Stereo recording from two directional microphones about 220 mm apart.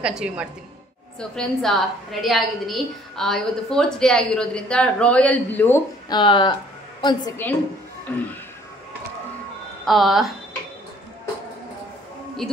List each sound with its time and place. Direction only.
0.0 s a woman's voice: 5° right (ahead or behind); by 7.3 s 20° left (ahead or behind)
8.1 s speech: 5° left (ahead or behind)
9.8 s a woman's voice: centre (ahead or behind)